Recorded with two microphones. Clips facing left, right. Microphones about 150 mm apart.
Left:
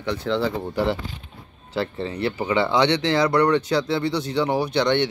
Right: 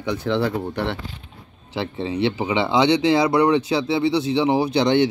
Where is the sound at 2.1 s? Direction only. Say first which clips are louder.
Right 8 dB; 90° right.